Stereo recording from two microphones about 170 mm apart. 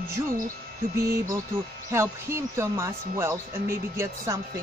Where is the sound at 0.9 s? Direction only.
65° right (ahead or behind).